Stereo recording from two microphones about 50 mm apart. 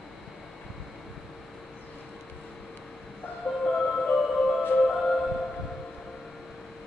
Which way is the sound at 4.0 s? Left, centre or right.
Centre.